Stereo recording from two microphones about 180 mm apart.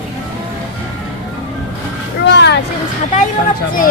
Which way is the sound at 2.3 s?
70° left (ahead or behind).